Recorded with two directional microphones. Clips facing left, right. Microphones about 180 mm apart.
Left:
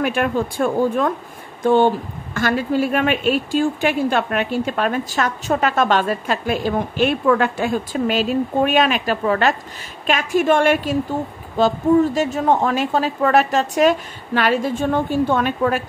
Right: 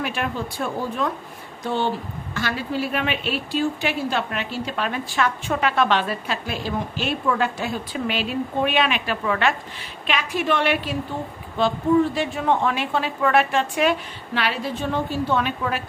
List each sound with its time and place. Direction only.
0.0 s a woman's voice: 50° left (ahead or behind)